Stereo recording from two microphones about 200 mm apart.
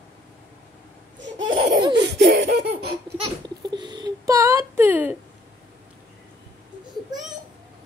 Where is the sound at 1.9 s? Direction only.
55° right (ahead or behind).